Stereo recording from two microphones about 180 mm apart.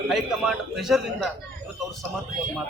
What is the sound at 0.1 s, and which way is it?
A man's voice, centre (ahead or behind).